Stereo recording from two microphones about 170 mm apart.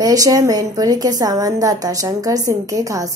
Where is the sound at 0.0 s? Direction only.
20° right (ahead or behind).